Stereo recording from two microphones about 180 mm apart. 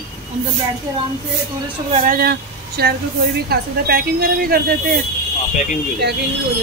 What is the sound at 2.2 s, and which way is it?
A woman's voice, 60° right (ahead or behind).